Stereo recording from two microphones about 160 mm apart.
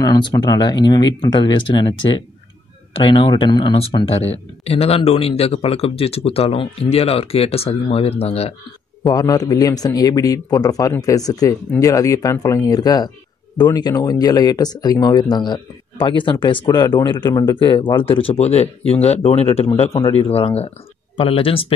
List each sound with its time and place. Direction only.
0.0 s speech: 25° left (ahead or behind); by 8.5 s 40° left (ahead or behind)
9.0 s speech: 25° left (ahead or behind)